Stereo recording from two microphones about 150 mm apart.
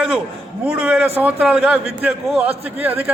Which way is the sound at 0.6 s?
5° right (ahead or behind).